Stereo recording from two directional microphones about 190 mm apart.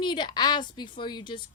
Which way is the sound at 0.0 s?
25° left (ahead or behind).